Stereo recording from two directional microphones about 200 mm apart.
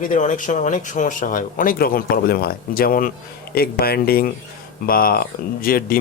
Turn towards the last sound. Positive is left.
turn(degrees=45)  # may be behind; listen again after turning